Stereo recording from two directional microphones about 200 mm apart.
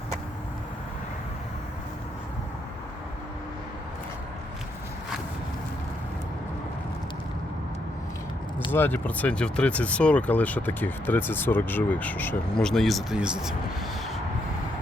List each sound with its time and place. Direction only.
8.7 s speech: 10° left (ahead or behind)